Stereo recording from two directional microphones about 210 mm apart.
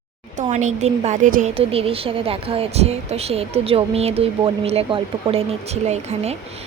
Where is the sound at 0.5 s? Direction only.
35° right (ahead or behind).